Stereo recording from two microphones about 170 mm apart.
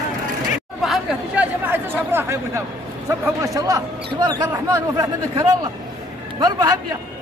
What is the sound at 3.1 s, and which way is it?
A man's voice, 20° right (ahead or behind).